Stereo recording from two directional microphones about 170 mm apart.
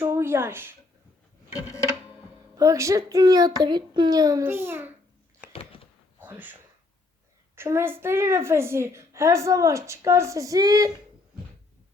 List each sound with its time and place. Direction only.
0.0 s speech: 15° right (ahead or behind)
2.6 s speech: 20° right (ahead or behind)
6.2 s a woman's voice: 10° right (ahead or behind)